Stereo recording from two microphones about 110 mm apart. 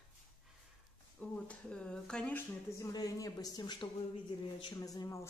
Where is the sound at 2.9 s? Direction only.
35° left (ahead or behind).